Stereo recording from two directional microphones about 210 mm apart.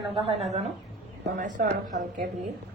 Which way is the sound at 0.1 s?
30° right (ahead or behind).